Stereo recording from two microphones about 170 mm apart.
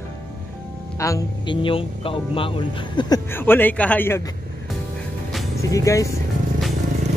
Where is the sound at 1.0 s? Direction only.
20° left (ahead or behind).